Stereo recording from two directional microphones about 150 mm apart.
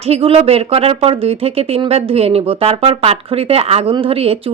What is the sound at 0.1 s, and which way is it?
Speech, 40° right (ahead or behind).